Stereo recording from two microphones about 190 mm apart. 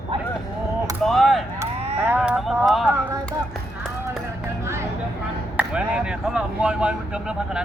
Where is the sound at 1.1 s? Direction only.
Centre (ahead or behind).